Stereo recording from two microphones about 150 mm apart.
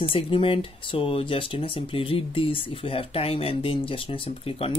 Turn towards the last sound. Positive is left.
turn(degrees=40)  # may be behind; listen again after turning